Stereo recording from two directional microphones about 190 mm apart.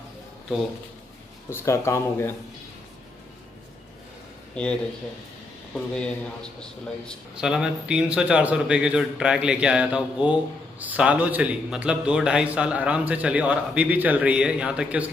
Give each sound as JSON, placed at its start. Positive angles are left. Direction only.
{"t": 1.5, "sound": "speech", "side_deg": 15}
{"t": 4.6, "sound": "speech", "side_deg": 5}
{"t": 5.9, "sound": "a man's voice", "side_deg": 5}